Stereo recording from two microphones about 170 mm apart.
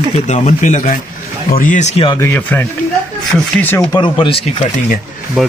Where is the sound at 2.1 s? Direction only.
10° left (ahead or behind).